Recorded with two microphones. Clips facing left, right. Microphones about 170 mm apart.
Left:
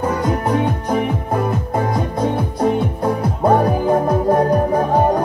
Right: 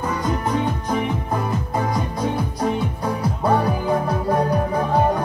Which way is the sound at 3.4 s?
45° left (ahead or behind).